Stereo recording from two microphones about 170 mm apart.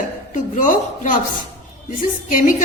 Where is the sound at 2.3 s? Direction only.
50° left (ahead or behind).